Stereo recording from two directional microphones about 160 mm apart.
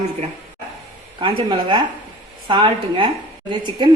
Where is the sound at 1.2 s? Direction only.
30° right (ahead or behind).